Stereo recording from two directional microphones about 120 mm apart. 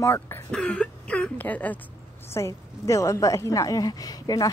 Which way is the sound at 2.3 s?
25° left (ahead or behind).